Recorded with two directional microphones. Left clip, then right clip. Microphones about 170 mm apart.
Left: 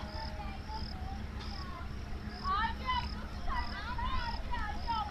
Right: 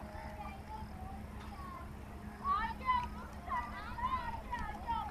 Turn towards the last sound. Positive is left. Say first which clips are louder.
# even
turn(degrees=-50)  # may be behind; listen again after turning